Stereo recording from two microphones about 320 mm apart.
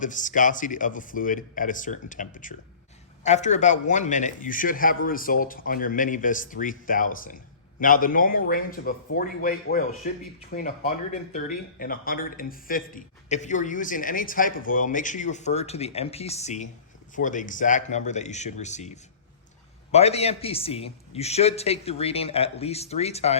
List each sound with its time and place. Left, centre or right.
0.0 s speech: left